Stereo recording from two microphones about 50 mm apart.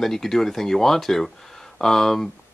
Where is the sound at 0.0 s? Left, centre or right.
Centre.